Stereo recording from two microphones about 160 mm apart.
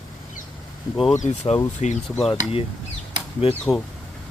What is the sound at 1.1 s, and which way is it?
Speech, 45° left (ahead or behind).